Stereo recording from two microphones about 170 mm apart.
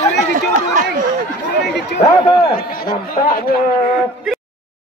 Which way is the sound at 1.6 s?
85° left.